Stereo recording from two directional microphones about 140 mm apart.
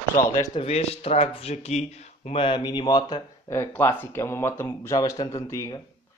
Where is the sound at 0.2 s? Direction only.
20° left (ahead or behind).